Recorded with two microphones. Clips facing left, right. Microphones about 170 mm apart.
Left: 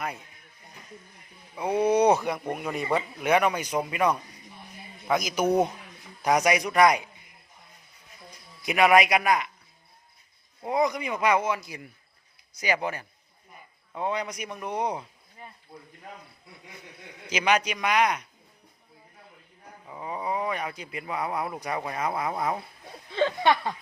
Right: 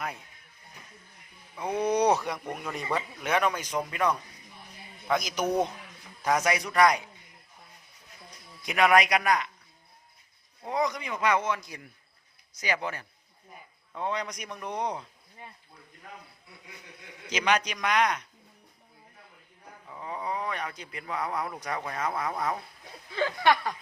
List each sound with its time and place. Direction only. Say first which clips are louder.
1.8 s speech: left 3 dB; 5° left (ahead or behind)
8.6 s speech: left 3 dB; 10° left (ahead or behind)
10.7 s speech: left 4 dB; 10° left (ahead or behind)
17.2 s speech: left 2 dB; 10° left (ahead or behind)
19.9 s speech: left 3 dB; 15° left (ahead or behind)
23.1 s speech: left 2 dB; 25° left (ahead or behind)